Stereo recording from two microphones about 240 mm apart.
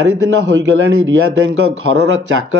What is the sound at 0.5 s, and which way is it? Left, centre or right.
Speech, right.